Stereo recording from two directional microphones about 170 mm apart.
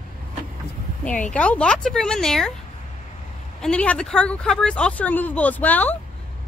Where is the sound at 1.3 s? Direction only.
5° left (ahead or behind).